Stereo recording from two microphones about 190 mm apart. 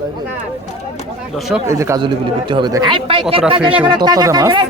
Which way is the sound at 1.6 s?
15° right (ahead or behind).